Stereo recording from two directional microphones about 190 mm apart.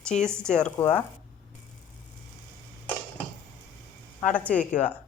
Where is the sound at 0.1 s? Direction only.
35° left (ahead or behind).